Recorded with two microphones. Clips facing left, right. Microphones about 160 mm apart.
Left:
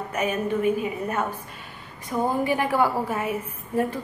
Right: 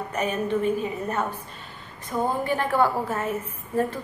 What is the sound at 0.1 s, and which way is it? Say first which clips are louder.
A woman's voice: even; 10° left (ahead or behind).